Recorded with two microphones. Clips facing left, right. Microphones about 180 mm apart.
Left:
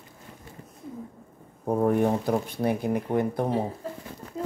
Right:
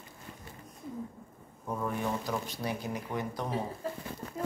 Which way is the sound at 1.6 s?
55° left (ahead or behind).